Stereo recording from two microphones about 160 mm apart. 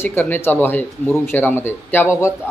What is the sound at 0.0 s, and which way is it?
Speech, 15° left (ahead or behind).